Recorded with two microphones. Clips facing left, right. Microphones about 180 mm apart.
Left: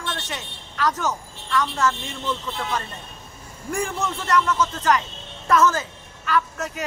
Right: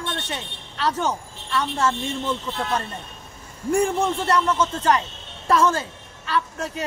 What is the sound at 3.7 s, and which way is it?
A man's voice, 30° right (ahead or behind).